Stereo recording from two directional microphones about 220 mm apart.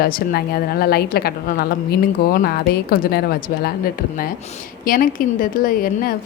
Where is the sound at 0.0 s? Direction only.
45° left (ahead or behind).